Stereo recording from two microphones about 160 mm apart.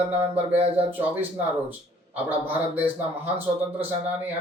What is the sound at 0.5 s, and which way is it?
Speech, 35° right (ahead or behind).